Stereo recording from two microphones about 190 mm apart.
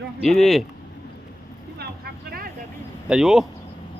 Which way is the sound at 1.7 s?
55° right (ahead or behind).